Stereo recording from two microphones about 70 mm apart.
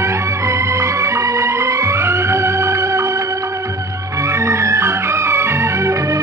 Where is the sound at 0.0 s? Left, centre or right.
Right.